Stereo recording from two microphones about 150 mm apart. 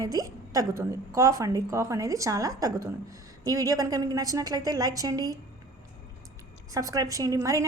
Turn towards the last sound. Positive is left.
turn(degrees=-20)  # may be behind; listen again after turning